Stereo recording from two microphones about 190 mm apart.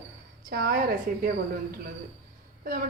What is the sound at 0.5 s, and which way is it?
Speech, 50° right (ahead or behind).